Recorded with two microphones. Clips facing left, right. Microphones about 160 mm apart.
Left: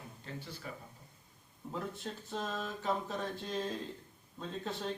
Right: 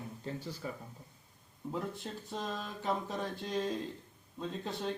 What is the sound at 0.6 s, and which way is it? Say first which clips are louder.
Speech: right 5 dB; 30° right (ahead or behind).